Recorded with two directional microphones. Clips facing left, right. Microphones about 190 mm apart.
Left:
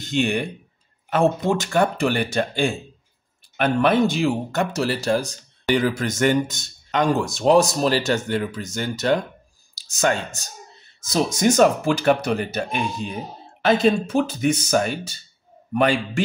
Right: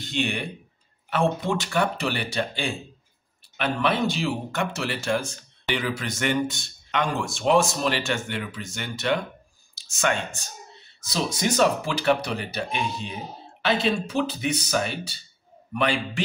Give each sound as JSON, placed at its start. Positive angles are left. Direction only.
{"t": 0.0, "sound": "speech", "side_deg": 45}